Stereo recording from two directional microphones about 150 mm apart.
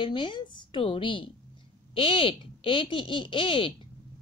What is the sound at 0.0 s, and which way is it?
A woman's voice, 35° left (ahead or behind).